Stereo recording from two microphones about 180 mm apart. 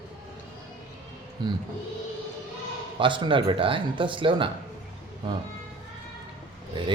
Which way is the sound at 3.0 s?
25° right (ahead or behind).